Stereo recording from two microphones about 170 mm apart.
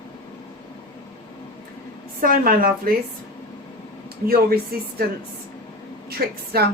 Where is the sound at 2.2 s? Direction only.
55° right (ahead or behind).